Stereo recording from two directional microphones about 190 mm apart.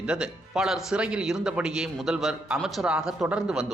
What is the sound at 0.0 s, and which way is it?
A man's voice, 5° right (ahead or behind).